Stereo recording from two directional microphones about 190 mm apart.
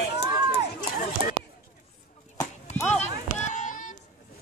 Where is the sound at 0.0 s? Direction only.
55° left (ahead or behind).